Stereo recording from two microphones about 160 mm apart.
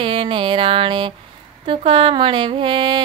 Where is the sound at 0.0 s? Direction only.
35° right (ahead or behind).